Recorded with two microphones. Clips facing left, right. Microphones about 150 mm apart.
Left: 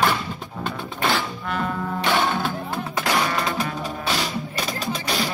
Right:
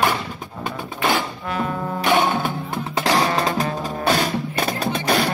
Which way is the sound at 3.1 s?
35° right (ahead or behind).